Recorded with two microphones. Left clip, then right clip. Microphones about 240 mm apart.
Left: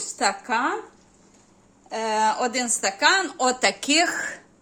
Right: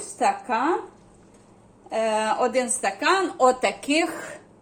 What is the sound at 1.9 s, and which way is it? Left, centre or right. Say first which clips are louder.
A woman's voice: left 1 dB; left.